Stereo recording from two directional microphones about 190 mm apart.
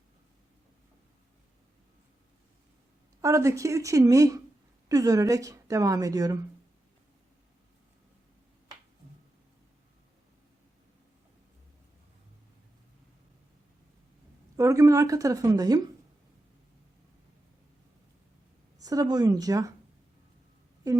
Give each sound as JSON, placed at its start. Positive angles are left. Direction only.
{"t": 3.2, "sound": "a woman's voice", "side_deg": -15}
{"t": 14.5, "sound": "a woman's voice", "side_deg": -15}
{"t": 18.8, "sound": "speech", "side_deg": -20}